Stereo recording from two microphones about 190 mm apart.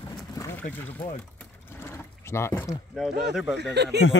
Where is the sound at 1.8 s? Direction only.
15° left (ahead or behind).